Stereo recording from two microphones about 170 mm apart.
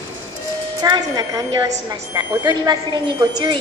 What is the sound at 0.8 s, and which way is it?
A woman's voice, 25° right (ahead or behind).